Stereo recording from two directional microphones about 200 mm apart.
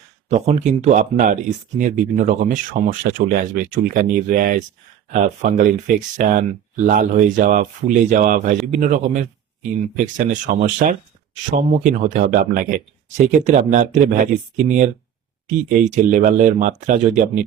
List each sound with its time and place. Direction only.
0.3 s speech: 35° right (ahead or behind)